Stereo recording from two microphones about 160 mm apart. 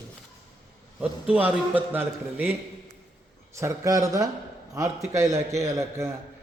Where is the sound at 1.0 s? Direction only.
10° right (ahead or behind).